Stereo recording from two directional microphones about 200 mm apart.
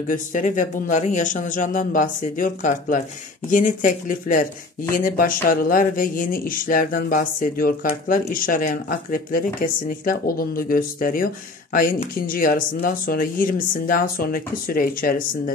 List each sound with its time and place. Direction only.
0.1 s a man's voice: 40° left (ahead or behind)